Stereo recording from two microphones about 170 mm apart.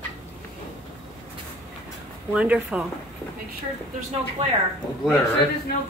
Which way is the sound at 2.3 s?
5° right (ahead or behind).